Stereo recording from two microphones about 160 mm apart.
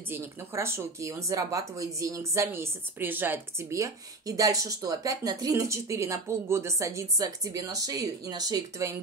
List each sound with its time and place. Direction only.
0.1 s speech: 15° right (ahead or behind)